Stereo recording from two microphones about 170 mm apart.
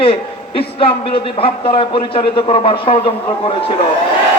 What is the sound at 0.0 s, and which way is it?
A man's voice, 35° left (ahead or behind).